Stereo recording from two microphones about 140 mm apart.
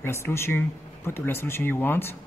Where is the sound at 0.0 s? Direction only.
15° left (ahead or behind).